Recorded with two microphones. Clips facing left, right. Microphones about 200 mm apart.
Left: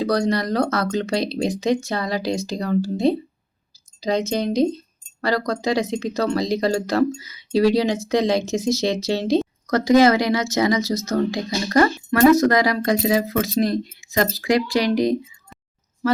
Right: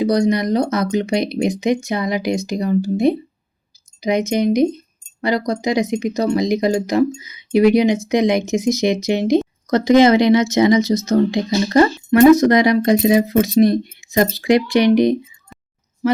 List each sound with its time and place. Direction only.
0.0 s a woman's voice: 15° right (ahead or behind)